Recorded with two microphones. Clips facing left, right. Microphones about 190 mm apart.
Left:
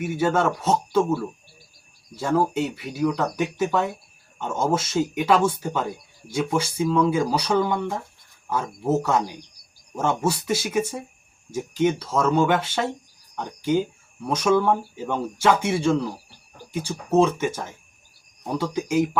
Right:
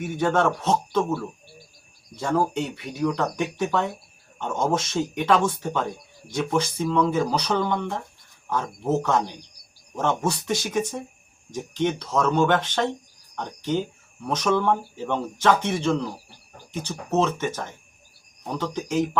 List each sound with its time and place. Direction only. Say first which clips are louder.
0.0 s speech: even; 5° left (ahead or behind)